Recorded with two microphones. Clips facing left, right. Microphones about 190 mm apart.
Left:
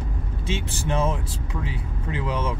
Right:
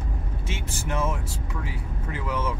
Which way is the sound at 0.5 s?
25° left (ahead or behind).